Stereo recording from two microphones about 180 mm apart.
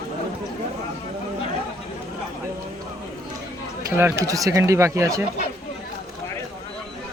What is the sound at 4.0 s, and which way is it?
Speech, 15° right (ahead or behind).